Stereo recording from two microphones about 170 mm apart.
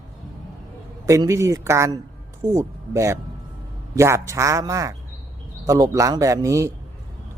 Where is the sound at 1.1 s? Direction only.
15° right (ahead or behind).